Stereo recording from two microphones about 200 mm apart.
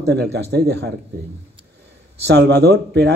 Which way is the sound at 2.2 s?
55° right (ahead or behind).